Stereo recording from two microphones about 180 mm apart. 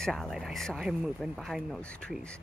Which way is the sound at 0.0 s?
Centre (ahead or behind).